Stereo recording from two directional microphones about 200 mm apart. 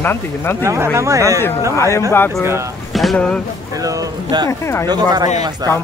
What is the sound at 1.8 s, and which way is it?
Speech, 15° left (ahead or behind).